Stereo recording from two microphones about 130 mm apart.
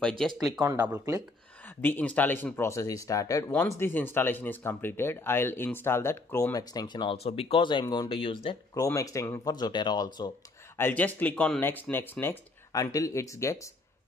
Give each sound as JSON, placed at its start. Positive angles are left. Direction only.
{"t": 0.6, "sound": "speech", "side_deg": -15}
{"t": 1.8, "sound": "speech", "side_deg": 15}
{"t": 7.2, "sound": "speech", "side_deg": 50}
{"t": 7.8, "sound": "speech", "side_deg": 30}
{"t": 8.1, "sound": "speech", "side_deg": 40}
{"t": 8.7, "sound": "speech", "side_deg": 25}
{"t": 10.8, "sound": "speech", "side_deg": 15}